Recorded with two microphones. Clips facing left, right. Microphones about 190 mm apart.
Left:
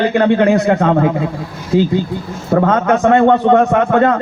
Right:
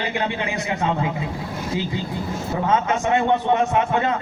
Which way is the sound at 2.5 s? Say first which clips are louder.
Left 9 dB; 60° left (ahead or behind).